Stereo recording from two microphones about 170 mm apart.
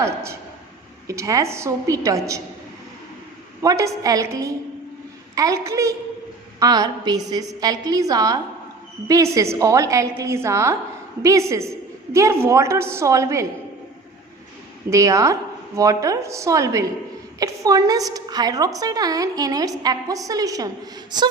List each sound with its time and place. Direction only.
0.0 s a woman's voice: 15° right (ahead or behind)
3.6 s a woman's voice: 20° right (ahead or behind)
14.8 s a woman's voice: 20° right (ahead or behind)